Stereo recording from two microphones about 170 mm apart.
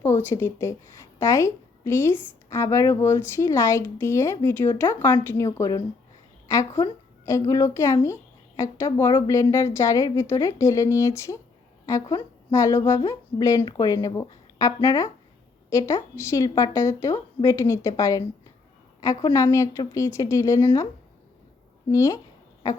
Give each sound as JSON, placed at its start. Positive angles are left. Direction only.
{"t": 0.0, "sound": "speech", "side_deg": 15}
{"t": 21.8, "sound": "speech", "side_deg": 20}